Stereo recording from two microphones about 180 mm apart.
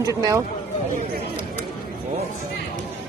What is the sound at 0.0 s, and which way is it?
Speech, 20° right (ahead or behind).